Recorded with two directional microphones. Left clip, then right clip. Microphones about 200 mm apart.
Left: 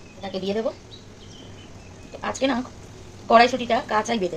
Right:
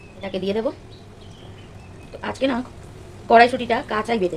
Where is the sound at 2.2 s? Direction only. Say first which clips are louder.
Right 1 dB; 15° right (ahead or behind).